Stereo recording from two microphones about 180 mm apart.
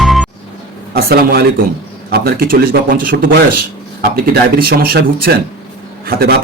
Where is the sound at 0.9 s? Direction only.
55° right (ahead or behind).